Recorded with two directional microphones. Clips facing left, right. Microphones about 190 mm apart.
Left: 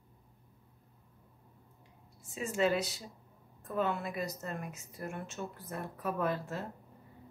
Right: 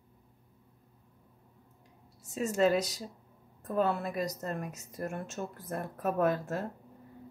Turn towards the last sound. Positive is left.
turn(degrees=-45)  # may be behind; listen again after turning